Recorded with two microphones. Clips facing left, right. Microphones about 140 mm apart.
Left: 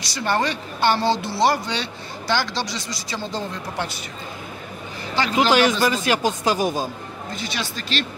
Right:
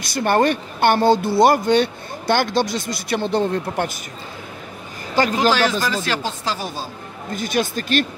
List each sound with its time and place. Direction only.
0.0 s speech: 50° right (ahead or behind)
5.1 s speech: 45° right (ahead or behind)
5.5 s speech: 15° left (ahead or behind)
7.3 s speech: 50° right (ahead or behind)